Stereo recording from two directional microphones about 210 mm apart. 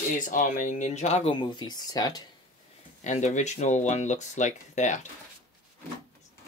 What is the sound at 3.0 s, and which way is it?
Speech, 35° left (ahead or behind).